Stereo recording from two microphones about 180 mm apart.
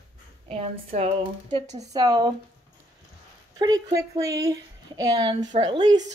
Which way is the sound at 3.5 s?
20° right (ahead or behind).